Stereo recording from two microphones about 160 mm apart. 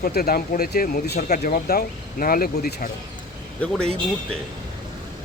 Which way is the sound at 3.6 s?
5° left (ahead or behind).